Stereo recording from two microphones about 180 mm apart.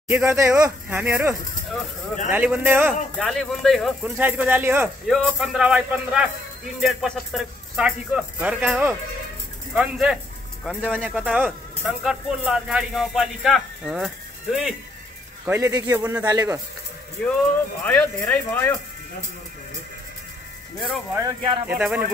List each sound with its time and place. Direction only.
0.1 s a man's voice: 10° right (ahead or behind)
2.3 s a man's voice: 10° right (ahead or behind)
3.3 s speech: centre (ahead or behind)
10.9 s speech: 5° right (ahead or behind)
15.4 s a man's voice: 15° right (ahead or behind)
17.8 s speech: 10° left (ahead or behind)
21.1 s a man's voice: 15° right (ahead or behind)